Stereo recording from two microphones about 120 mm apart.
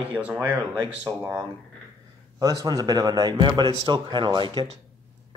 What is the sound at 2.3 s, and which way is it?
A man's voice, 30° right (ahead or behind).